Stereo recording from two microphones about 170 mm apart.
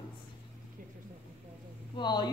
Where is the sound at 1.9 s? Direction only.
25° left (ahead or behind).